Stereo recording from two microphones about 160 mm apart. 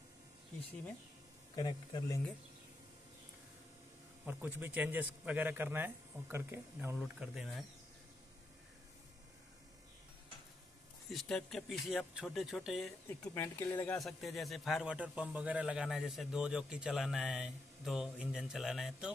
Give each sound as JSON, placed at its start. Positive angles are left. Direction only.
{"t": 1.5, "sound": "speech", "side_deg": 25}
{"t": 4.3, "sound": "a man's voice", "side_deg": -10}
{"t": 11.1, "sound": "a man's voice", "side_deg": 0}
{"t": 13.2, "sound": "speech", "side_deg": 15}
{"t": 14.0, "sound": "a man's voice", "side_deg": 0}